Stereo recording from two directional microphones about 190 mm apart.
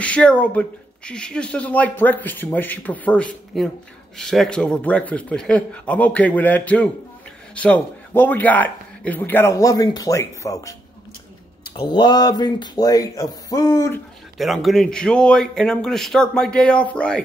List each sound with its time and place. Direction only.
0.0 s speech: 5° left (ahead or behind)
11.7 s speech: 25° left (ahead or behind)
14.4 s speech: centre (ahead or behind)